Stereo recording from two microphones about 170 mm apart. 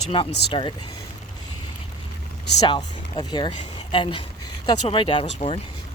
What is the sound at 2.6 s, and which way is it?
Speech, 25° left (ahead or behind).